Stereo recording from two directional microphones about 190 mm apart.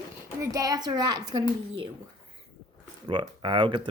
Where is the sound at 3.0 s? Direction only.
25° right (ahead or behind).